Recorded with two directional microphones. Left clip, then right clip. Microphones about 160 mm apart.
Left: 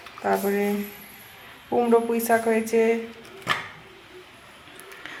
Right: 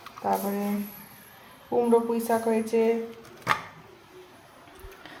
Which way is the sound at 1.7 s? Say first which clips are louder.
Left 2 dB; centre (ahead or behind).